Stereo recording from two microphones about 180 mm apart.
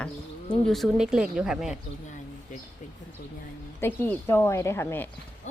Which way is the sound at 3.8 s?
15° left (ahead or behind).